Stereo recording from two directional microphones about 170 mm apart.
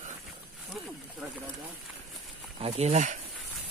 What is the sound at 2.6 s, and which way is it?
Speech, 35° right (ahead or behind).